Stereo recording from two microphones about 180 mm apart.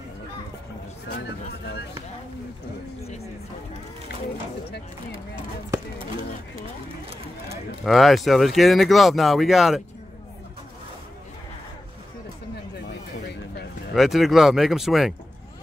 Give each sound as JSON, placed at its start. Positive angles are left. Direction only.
{"t": 1.0, "sound": "speech", "side_deg": 65}
{"t": 7.8, "sound": "speech", "side_deg": 0}
{"t": 13.9, "sound": "speech", "side_deg": 0}